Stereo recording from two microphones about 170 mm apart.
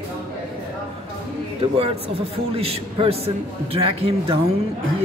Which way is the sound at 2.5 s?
35° right (ahead or behind).